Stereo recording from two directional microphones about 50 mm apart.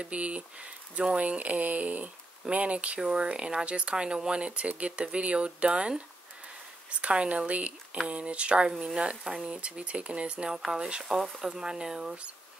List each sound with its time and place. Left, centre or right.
0.0 s speech: right
3.0 s speech: centre
8.6 s speech: centre